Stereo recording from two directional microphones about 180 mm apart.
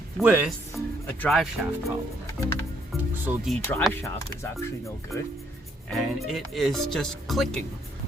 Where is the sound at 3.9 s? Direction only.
10° left (ahead or behind).